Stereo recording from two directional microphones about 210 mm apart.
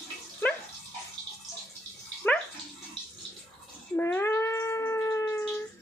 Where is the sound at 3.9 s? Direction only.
10° left (ahead or behind).